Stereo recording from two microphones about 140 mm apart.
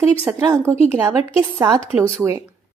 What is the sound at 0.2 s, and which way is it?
Speech, 20° right (ahead or behind).